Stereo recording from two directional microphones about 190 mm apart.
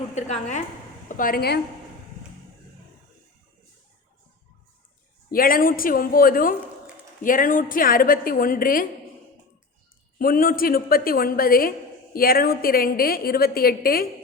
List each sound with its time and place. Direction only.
0.1 s a woman's voice: 35° left (ahead or behind); by 1.6 s 55° left (ahead or behind)
5.3 s a woman's voice: 50° left (ahead or behind)
10.2 s a woman's voice: 50° left (ahead or behind)